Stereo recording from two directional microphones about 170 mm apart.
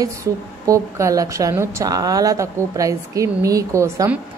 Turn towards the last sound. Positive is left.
turn(degrees=-15)  # may be behind; listen again after turning